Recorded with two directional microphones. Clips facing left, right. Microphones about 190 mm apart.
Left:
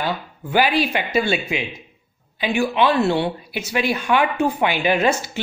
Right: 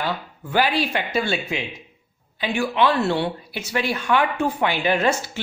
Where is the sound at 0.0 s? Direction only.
15° left (ahead or behind).